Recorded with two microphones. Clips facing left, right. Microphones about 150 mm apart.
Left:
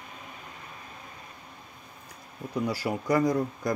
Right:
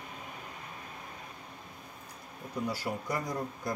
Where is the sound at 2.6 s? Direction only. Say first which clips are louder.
Left 5 dB; 90° left.